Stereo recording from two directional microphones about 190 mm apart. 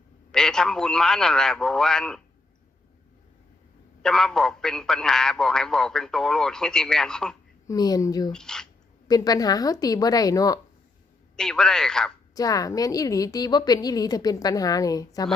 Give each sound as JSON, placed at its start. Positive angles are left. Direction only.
{"t": 0.3, "sound": "a man's voice", "side_deg": 5}
{"t": 4.0, "sound": "a man's voice", "side_deg": 5}
{"t": 7.7, "sound": "a woman's voice", "side_deg": 20}
{"t": 8.3, "sound": "speech", "side_deg": 5}
{"t": 9.0, "sound": "a woman's voice", "side_deg": 20}
{"t": 11.3, "sound": "a man's voice", "side_deg": 5}
{"t": 12.3, "sound": "a woman's voice", "side_deg": 20}